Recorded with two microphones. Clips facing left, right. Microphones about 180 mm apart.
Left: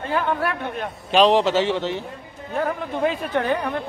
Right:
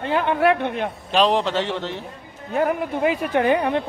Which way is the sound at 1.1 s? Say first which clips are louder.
Left 3 dB; centre (ahead or behind).